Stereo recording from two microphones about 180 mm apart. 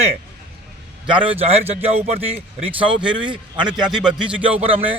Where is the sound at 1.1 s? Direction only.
35° right (ahead or behind).